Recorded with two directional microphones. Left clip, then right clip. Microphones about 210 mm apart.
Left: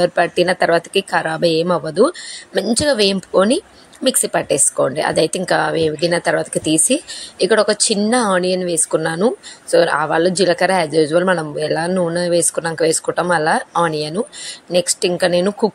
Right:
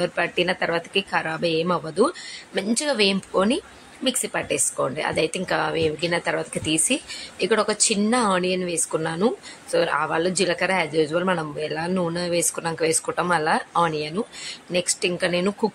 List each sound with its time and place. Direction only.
0.0 s speech: 20° left (ahead or behind)